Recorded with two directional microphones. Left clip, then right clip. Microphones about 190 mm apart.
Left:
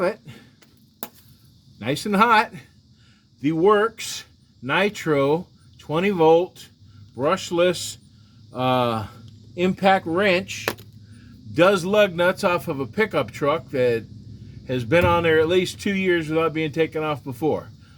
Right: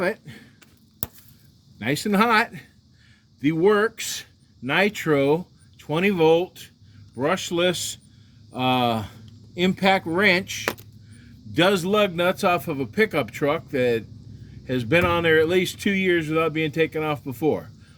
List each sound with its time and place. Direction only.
0.0 s speech: 25° right (ahead or behind)
1.8 s speech: 25° right (ahead or behind)